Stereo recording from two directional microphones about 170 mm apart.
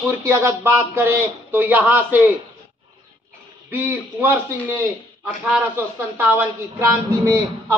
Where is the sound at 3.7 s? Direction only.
10° right (ahead or behind).